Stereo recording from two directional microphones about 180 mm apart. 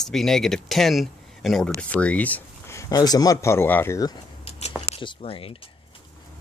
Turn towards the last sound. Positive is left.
turn(degrees=30)  # may be behind; listen again after turning